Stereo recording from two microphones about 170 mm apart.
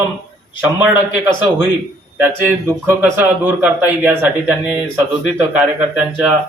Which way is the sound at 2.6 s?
15° right (ahead or behind).